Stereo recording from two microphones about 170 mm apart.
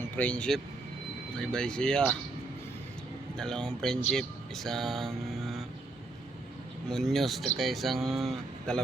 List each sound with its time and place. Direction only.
0.2 s speech: 5° left (ahead or behind)
3.3 s speech: 5° left (ahead or behind)
6.9 s speech: centre (ahead or behind)